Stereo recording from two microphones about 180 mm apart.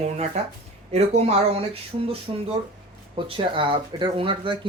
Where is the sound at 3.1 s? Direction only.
30° right (ahead or behind).